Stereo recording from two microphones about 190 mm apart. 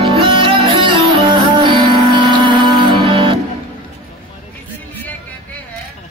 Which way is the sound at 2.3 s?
25° right (ahead or behind).